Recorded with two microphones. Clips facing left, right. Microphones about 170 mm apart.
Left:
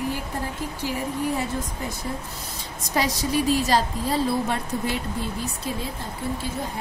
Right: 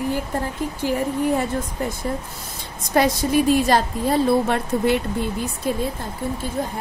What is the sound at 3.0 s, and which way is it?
A woman's voice, 55° right (ahead or behind).